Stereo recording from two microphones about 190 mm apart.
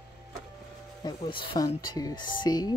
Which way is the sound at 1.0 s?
25° left (ahead or behind).